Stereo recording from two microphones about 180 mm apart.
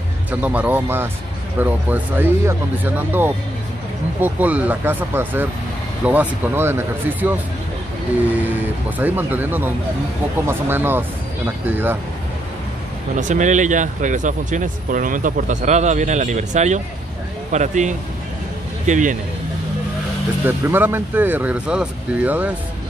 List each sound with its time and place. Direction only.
0.3 s speech: 10° right (ahead or behind)
13.1 s a man's voice: 45° right (ahead or behind)
20.4 s speech: 10° right (ahead or behind)